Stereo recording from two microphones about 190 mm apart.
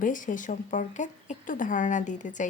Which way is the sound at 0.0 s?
45° left (ahead or behind).